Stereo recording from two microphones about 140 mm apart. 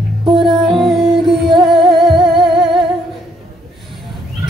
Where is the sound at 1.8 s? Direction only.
35° right (ahead or behind).